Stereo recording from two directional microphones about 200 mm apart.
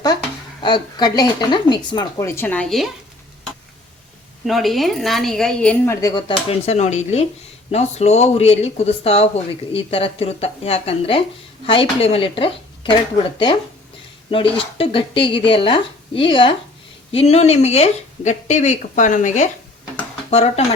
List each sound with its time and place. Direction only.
0.6 s speech: 20° left (ahead or behind); by 2.9 s centre (ahead or behind)
4.4 s a woman's voice: centre (ahead or behind); by 12.9 s 25° left (ahead or behind)
14.3 s speech: 25° left (ahead or behind)